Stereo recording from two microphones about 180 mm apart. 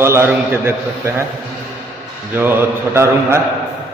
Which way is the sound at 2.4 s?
10° right (ahead or behind).